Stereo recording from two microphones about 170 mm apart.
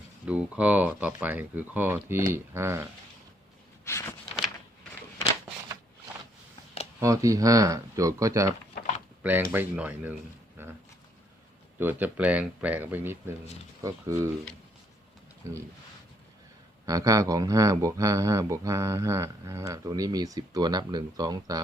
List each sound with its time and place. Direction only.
0.3 s speech: 5° right (ahead or behind)
7.0 s speech: 20° right (ahead or behind)
11.8 s speech: 10° right (ahead or behind)
15.4 s speech: 20° right (ahead or behind)
16.8 s speech: 20° right (ahead or behind)